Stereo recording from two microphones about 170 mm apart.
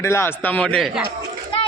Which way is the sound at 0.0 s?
15° left (ahead or behind).